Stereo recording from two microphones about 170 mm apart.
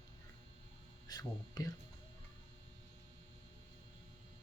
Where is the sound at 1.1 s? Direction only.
25° left (ahead or behind).